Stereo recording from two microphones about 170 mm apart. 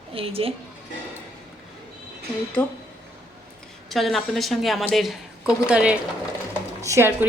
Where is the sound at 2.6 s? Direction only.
10° left (ahead or behind).